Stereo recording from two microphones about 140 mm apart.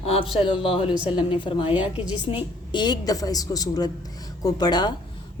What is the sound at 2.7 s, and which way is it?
A woman's voice, 30° left (ahead or behind).